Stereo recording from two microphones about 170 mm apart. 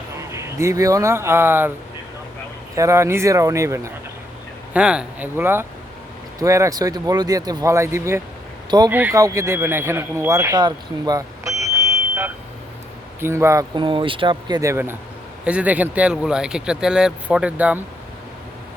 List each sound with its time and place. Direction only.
0.3 s speech: 15° right (ahead or behind)
2.7 s speech: 15° right (ahead or behind)
4.7 s speech: 5° right (ahead or behind)